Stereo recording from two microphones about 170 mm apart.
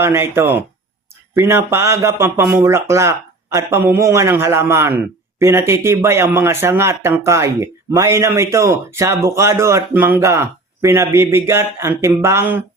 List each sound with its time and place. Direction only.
0.0 s speech: 15° right (ahead or behind)